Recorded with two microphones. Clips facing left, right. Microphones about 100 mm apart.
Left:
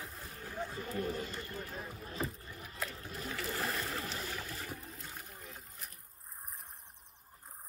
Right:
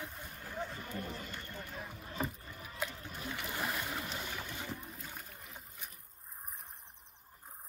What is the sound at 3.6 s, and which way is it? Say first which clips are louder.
Boat: even; centre (ahead or behind).